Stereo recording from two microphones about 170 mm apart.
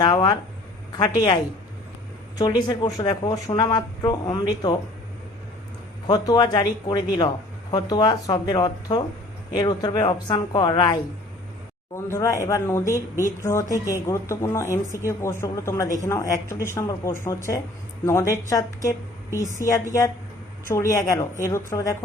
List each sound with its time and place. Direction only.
0.0 s speech: 25° left (ahead or behind)
2.4 s speech: 25° left (ahead or behind)
6.1 s speech: 25° left (ahead or behind)
20.7 s speech: 15° left (ahead or behind)